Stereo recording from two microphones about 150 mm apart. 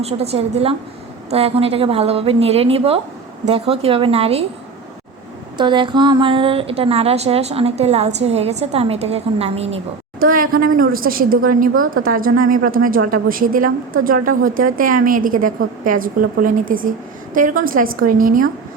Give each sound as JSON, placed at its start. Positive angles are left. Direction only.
{"t": 0.0, "sound": "a woman's voice", "side_deg": -45}
{"t": 5.5, "sound": "a woman's voice", "side_deg": -30}
{"t": 10.2, "sound": "a woman's voice", "side_deg": -70}